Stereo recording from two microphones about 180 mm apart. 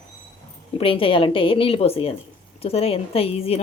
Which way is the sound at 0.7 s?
30° left (ahead or behind).